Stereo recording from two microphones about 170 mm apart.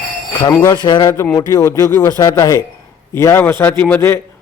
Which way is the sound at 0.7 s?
25° left (ahead or behind).